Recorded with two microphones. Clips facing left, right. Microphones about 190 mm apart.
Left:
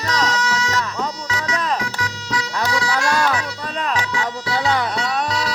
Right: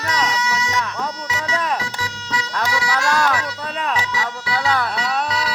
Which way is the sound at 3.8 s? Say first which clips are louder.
Left 1 dB; 5° right (ahead or behind).